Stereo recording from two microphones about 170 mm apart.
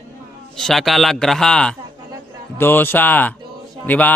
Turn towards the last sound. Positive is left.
turn(degrees=10)  # may be behind; listen again after turning